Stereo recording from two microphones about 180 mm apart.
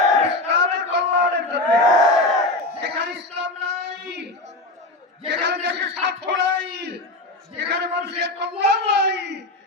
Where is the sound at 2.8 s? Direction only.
75° right (ahead or behind).